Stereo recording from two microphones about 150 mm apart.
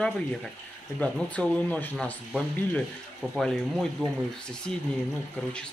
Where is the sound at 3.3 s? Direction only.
Centre (ahead or behind).